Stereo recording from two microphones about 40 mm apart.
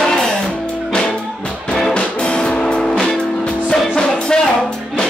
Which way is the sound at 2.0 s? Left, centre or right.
Left.